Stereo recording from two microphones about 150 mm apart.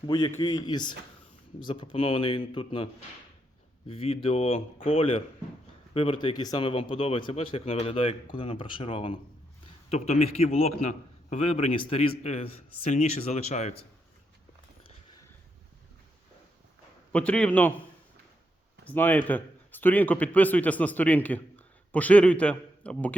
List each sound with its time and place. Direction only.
0.1 s a man's voice: 30° left (ahead or behind)
6.2 s a man's voice: 30° left (ahead or behind); by 13.8 s 50° left (ahead or behind)
17.1 s a man's voice: 10° left (ahead or behind)
18.9 s a man's voice: 10° left (ahead or behind)